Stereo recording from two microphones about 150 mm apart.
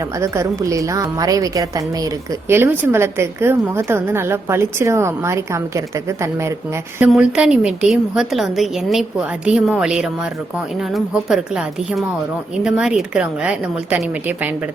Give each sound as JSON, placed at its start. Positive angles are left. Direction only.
{"t": 0.2, "sound": "a woman's voice", "side_deg": -20}
{"t": 7.1, "sound": "a woman's voice", "side_deg": -5}